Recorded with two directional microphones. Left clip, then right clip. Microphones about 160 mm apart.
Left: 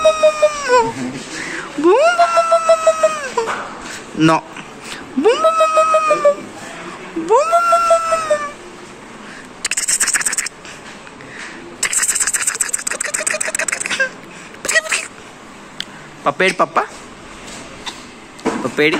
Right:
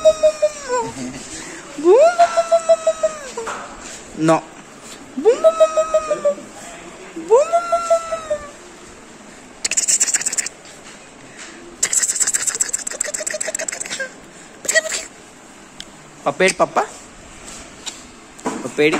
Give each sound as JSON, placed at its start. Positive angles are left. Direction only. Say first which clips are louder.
{"t": 0.0, "sound": "baby cry", "louder": "left 2 dB", "side_deg": -5}
{"t": 1.4, "sound": "cat", "louder": "left 3 dB", "side_deg": -5}
{"t": 9.6, "sound": "scratch", "louder": "even", "side_deg": 0}
{"t": 11.8, "sound": "a sound", "louder": "left 2 dB", "side_deg": -20}
{"t": 18.8, "sound": "speech", "louder": "left 1 dB", "side_deg": -10}